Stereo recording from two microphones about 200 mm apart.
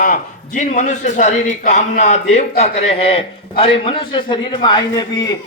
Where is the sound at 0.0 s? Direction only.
40° left (ahead or behind).